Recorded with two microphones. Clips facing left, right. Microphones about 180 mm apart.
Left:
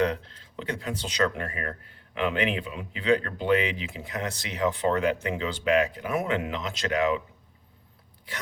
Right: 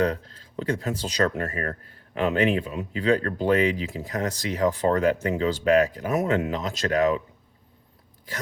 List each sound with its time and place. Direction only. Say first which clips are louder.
0.0 s speech: right 2 dB; 40° right (ahead or behind)